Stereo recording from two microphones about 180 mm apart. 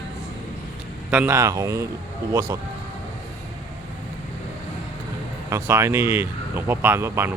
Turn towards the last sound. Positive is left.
turn(degrees=-15)  # may be behind; listen again after turning